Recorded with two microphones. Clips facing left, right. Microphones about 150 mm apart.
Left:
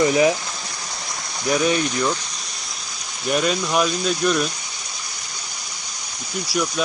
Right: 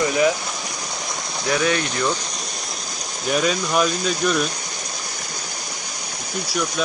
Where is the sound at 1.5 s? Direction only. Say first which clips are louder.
Left 1 dB; 15° left (ahead or behind).